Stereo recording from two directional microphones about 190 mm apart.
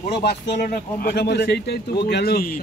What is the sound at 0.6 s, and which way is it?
Speech, 50° left (ahead or behind).